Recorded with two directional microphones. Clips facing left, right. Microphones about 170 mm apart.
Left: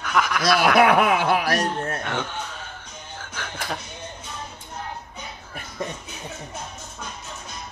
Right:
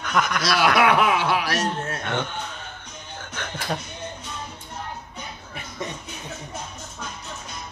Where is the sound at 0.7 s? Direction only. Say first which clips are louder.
Left 3 dB; 50° left (ahead or behind).